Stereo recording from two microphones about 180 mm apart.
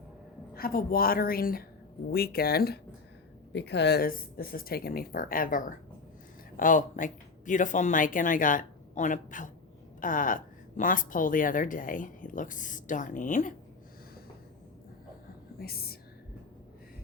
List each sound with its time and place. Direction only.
0.5 s speech: 55° left (ahead or behind)
3.5 s a woman's voice: 70° left (ahead or behind); by 13.5 s 45° left (ahead or behind)
15.5 s speech: 55° left (ahead or behind)